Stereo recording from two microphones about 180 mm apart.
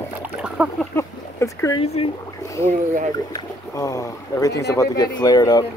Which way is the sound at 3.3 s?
20° left (ahead or behind).